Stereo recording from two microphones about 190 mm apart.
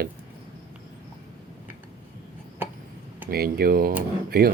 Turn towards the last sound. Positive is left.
turn(degrees=-55)  # may be behind; listen again after turning